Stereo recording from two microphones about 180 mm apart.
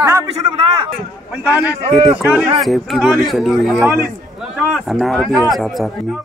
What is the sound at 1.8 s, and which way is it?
Speech, 35° right (ahead or behind).